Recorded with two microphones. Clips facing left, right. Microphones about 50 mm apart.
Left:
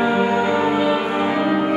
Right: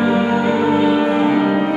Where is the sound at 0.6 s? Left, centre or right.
Centre.